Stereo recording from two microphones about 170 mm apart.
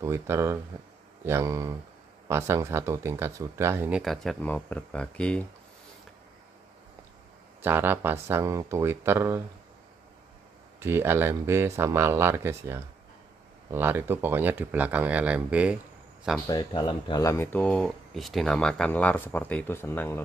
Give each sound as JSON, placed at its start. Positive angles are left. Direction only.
{"t": 0.0, "sound": "speech", "side_deg": -15}
{"t": 4.0, "sound": "speech", "side_deg": 0}
{"t": 7.6, "sound": "speech", "side_deg": -10}
{"t": 10.8, "sound": "speech", "side_deg": -15}
{"t": 16.4, "sound": "speech", "side_deg": 25}